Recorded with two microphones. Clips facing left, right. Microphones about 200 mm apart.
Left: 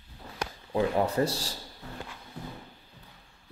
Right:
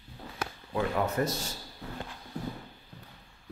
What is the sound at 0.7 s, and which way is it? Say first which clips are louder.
Speech: left 3 dB; 30° left (ahead or behind).